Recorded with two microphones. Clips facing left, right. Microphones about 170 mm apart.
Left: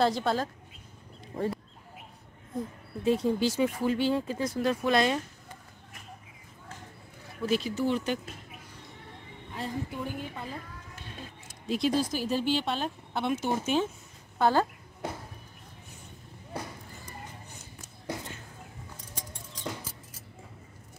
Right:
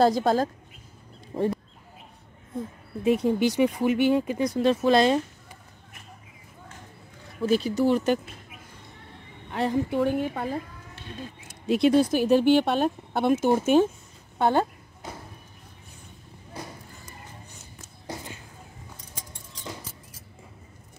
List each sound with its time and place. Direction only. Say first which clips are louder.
0.0 s speech: right 6 dB; 45° right (ahead or behind)
1.3 s speech: right 5 dB; 30° right (ahead or behind)
2.5 s speech: right 1 dB; centre (ahead or behind)
3.0 s speech: right 4 dB; 20° right (ahead or behind)
4.6 s speech: right 6 dB; 30° right (ahead or behind)
7.4 s speech: right 6 dB; 40° right (ahead or behind)
9.5 s a woman's voice: right 10 dB; 75° right (ahead or behind); by 13.8 s 50° right (ahead or behind)
14.4 s speech: right 2 dB; 25° right (ahead or behind)